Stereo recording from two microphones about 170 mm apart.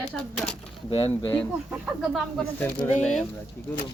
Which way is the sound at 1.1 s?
10° left (ahead or behind).